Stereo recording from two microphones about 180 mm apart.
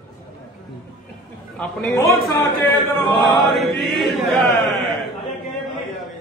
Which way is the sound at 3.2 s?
Centre (ahead or behind).